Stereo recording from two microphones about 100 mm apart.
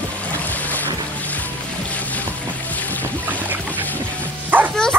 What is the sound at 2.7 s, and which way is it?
Boat, 15° left (ahead or behind).